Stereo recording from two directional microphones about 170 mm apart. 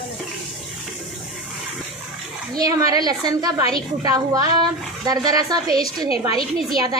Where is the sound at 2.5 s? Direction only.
20° right (ahead or behind).